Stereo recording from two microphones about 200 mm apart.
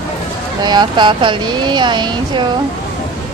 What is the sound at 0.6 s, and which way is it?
Speech, 20° right (ahead or behind).